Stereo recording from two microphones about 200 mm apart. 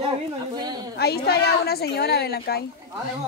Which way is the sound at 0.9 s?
50° left (ahead or behind).